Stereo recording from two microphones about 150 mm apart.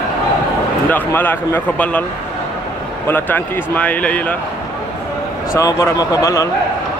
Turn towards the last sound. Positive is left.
turn(degrees=25)  # may be behind; listen again after turning